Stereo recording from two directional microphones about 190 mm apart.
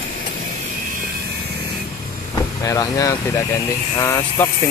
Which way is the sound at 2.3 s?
15° left (ahead or behind).